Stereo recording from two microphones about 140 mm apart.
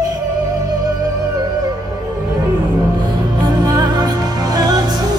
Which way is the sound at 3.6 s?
25° right (ahead or behind).